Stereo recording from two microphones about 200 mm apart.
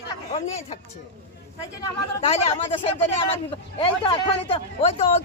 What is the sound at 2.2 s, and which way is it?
Speech, 30° left (ahead or behind).